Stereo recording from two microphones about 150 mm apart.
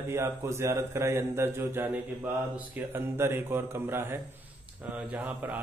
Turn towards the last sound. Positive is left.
turn(degrees=-10)  # may be behind; listen again after turning